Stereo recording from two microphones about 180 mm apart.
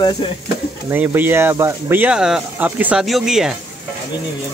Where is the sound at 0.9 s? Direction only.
10° right (ahead or behind).